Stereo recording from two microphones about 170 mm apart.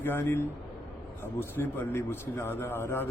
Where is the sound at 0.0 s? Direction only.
15° left (ahead or behind).